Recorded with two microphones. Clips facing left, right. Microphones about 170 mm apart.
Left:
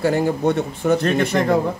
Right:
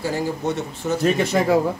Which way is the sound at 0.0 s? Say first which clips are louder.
Left 6 dB; 60° left (ahead or behind).